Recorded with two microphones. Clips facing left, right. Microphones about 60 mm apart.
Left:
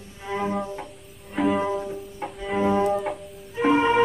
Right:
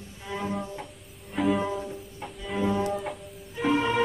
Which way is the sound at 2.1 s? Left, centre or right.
Left.